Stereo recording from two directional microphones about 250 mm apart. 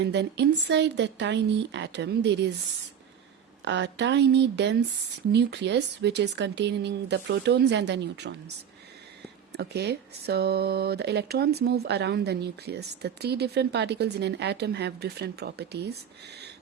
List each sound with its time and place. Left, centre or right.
0.0 s speech: right
3.6 s speech: right
9.5 s speech: right